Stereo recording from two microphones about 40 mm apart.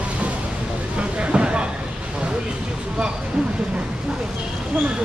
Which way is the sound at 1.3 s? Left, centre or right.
Right.